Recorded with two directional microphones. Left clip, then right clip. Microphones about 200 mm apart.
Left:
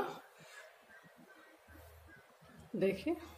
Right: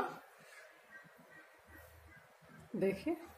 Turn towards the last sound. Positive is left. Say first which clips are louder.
# left 1 dB
turn(degrees=-5)  # may be behind; listen again after turning